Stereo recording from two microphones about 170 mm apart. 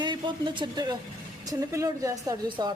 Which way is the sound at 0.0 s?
25° right (ahead or behind).